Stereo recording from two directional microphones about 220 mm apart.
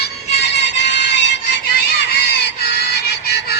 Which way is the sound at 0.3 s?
50° left (ahead or behind).